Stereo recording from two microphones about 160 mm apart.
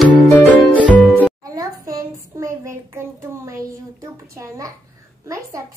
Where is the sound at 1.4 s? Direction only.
20° right (ahead or behind).